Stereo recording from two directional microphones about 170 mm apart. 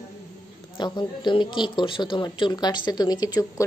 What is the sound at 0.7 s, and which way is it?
Speech, 25° left (ahead or behind).